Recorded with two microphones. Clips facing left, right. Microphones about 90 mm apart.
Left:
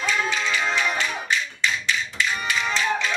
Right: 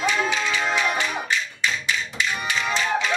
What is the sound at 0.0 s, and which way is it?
Music, 15° right (ahead or behind).